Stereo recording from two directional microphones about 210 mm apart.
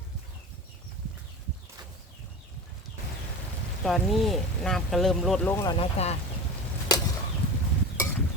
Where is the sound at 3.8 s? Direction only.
Centre (ahead or behind).